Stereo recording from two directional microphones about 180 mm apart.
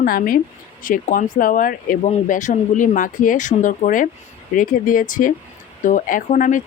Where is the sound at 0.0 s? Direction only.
50° left (ahead or behind).